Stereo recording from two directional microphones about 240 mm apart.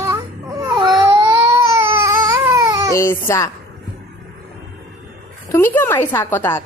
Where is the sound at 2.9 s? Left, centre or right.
Centre.